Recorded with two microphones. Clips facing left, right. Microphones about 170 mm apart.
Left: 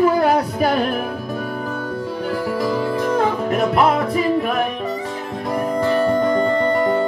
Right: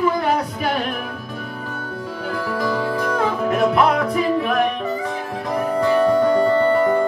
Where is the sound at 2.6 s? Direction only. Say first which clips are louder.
Even; 30° left (ahead or behind).